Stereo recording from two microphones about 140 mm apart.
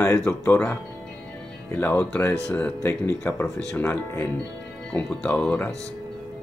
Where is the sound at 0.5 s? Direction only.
15° left (ahead or behind).